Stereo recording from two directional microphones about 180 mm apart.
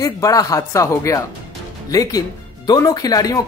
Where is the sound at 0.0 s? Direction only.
20° left (ahead or behind).